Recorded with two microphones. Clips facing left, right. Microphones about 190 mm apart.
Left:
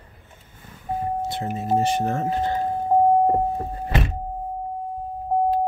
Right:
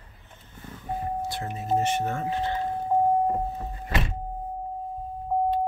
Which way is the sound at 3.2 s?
45° left (ahead or behind).